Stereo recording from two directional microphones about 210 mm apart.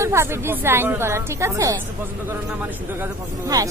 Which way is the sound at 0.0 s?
10° right (ahead or behind).